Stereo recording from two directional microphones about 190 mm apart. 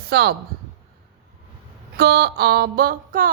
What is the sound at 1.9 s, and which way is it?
A woman's voice, 60° right (ahead or behind).